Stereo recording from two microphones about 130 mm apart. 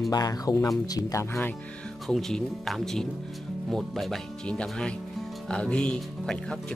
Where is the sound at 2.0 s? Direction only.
5° left (ahead or behind).